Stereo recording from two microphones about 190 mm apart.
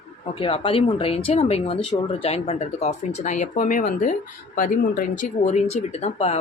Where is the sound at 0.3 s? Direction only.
30° left (ahead or behind).